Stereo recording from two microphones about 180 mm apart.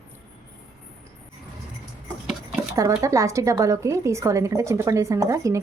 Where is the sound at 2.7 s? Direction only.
15° right (ahead or behind).